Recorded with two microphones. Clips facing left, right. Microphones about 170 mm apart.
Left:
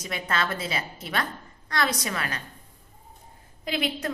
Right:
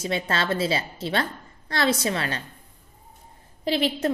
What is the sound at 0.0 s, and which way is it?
A woman's voice, 30° right (ahead or behind).